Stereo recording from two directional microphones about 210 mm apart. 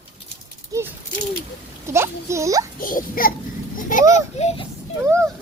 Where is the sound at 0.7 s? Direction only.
15° right (ahead or behind).